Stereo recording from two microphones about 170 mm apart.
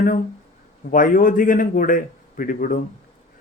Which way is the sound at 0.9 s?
55° left (ahead or behind).